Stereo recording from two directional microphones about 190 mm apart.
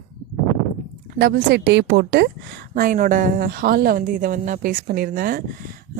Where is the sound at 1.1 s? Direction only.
55° right (ahead or behind).